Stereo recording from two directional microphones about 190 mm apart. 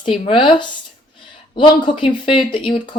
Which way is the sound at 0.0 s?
25° left (ahead or behind).